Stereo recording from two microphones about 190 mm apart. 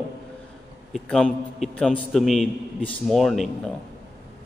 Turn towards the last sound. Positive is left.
turn(degrees=0)  # may be behind; listen again after turning